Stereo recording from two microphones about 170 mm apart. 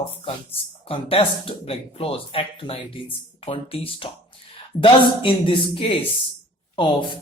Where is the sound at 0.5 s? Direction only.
30° left (ahead or behind).